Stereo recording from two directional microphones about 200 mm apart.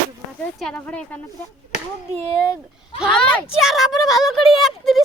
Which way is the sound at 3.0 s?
Centre (ahead or behind).